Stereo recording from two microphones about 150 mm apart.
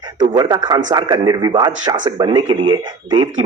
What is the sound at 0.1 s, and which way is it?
A man's voice, 25° right (ahead or behind).